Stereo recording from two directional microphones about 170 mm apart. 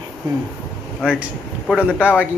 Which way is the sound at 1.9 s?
10° left (ahead or behind).